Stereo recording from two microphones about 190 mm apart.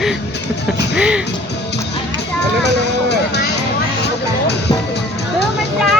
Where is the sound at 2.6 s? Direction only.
60° left (ahead or behind).